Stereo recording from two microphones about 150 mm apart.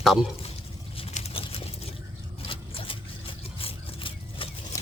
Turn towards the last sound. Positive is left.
turn(degrees=35)  # may be behind; listen again after turning